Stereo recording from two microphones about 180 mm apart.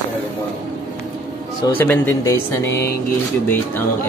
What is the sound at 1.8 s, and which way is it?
Speech, 10° left (ahead or behind).